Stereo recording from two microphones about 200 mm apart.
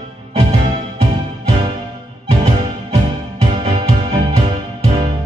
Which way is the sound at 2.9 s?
30° right (ahead or behind).